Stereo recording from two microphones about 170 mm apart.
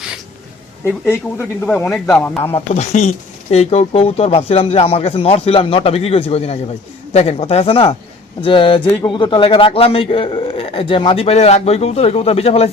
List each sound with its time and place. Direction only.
0.9 s speech: 15° left (ahead or behind)
2.6 s a man's voice: 40° left (ahead or behind)